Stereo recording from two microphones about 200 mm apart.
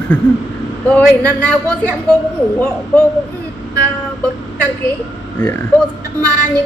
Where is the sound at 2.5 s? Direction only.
10° left (ahead or behind).